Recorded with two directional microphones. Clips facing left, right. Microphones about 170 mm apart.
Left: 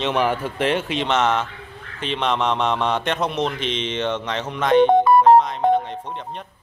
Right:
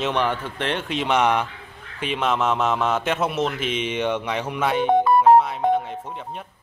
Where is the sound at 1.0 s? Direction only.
10° right (ahead or behind).